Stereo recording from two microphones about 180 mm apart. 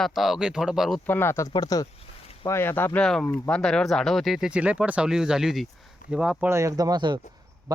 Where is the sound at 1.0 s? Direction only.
10° left (ahead or behind).